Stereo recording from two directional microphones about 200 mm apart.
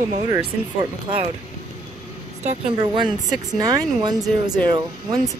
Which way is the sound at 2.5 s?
25° right (ahead or behind).